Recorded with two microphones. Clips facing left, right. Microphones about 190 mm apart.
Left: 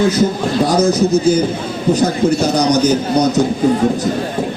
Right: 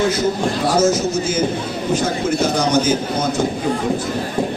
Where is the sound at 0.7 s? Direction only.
35° left (ahead or behind).